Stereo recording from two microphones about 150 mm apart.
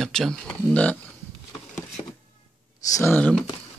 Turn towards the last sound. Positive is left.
turn(degrees=10)  # may be behind; listen again after turning